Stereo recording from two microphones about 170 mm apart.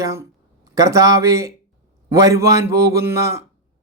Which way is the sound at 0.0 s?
15° right (ahead or behind).